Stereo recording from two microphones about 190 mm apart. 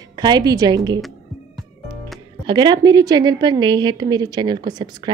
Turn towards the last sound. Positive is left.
turn(degrees=-20)  # may be behind; listen again after turning